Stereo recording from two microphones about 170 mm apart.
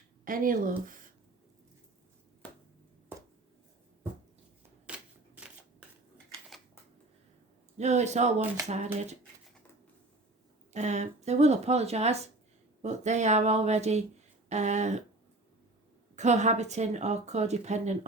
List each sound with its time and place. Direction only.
0.3 s speech: 55° right (ahead or behind)
0.9 s a sound: 50° right (ahead or behind)
2.4 s chop: 10° left (ahead or behind)
4.9 s shuffling cards: 5° right (ahead or behind)
7.8 s speech: 40° right (ahead or behind)
10.7 s speech: 45° right (ahead or behind)
16.1 s speech: 45° right (ahead or behind)